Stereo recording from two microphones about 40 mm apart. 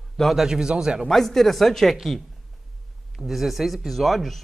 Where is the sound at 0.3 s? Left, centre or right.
Centre.